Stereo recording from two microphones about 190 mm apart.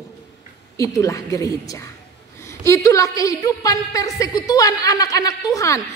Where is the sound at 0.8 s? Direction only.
15° left (ahead or behind).